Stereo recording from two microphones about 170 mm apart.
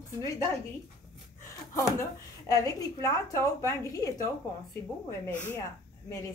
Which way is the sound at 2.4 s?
20° left (ahead or behind).